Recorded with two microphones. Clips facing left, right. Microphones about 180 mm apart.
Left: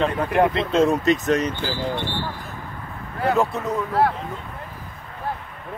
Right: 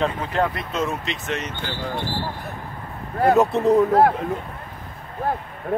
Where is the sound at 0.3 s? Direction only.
20° left (ahead or behind).